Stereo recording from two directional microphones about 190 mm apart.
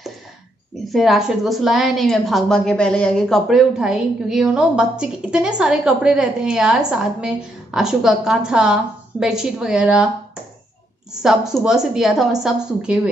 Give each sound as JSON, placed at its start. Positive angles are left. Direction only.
{"t": 0.9, "sound": "a woman's voice", "side_deg": 0}
{"t": 11.2, "sound": "a woman's voice", "side_deg": -5}